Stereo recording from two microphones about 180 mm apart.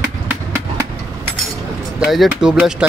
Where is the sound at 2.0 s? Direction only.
Centre (ahead or behind).